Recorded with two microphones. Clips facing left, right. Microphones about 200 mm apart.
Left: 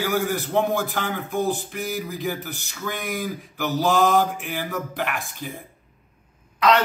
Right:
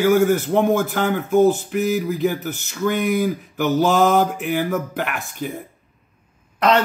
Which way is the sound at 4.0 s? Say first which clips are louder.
Right 3 dB; 45° right (ahead or behind).